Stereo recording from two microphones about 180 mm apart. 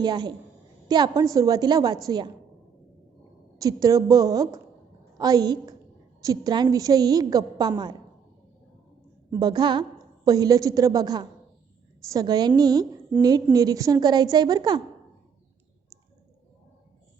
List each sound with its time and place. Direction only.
0.0 s a woman's voice: 25° right (ahead or behind)
3.6 s a woman's voice: 20° right (ahead or behind)
9.3 s a woman's voice: 20° right (ahead or behind)